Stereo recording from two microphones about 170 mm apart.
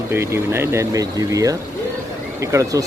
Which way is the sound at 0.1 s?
15° right (ahead or behind).